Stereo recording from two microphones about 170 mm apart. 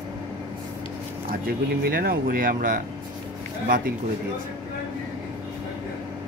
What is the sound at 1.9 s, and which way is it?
Speech, 60° right (ahead or behind).